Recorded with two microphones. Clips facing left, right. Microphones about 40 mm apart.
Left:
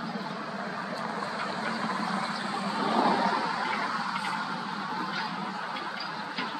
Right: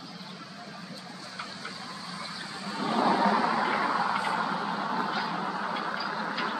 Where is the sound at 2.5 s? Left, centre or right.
Left.